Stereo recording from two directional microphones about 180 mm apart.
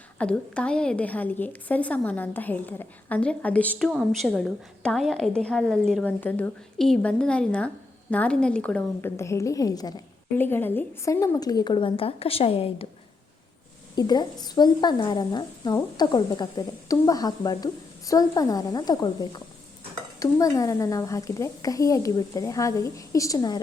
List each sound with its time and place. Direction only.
0.2 s a woman's voice: 5° left (ahead or behind); by 12.9 s 30° left (ahead or behind)
13.9 s a woman's voice: 25° left (ahead or behind)